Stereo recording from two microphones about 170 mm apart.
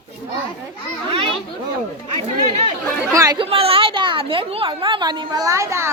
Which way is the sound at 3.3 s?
35° right (ahead or behind).